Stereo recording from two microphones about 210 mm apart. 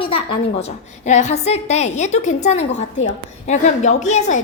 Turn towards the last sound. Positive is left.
turn(degrees=35)  # may be behind; listen again after turning